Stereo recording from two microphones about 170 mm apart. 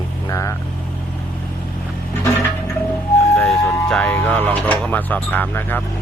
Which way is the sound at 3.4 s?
5° left (ahead or behind).